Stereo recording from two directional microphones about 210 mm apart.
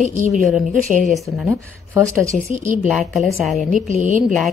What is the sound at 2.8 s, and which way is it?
A woman's voice, centre (ahead or behind).